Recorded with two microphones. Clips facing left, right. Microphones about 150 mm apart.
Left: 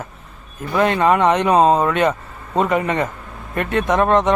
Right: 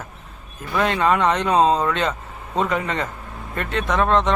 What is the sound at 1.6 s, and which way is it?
Speech, 55° left (ahead or behind).